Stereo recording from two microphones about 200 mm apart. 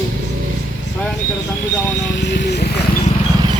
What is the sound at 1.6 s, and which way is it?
Speech, 65° left (ahead or behind).